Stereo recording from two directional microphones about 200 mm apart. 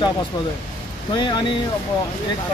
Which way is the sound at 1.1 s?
25° left (ahead or behind).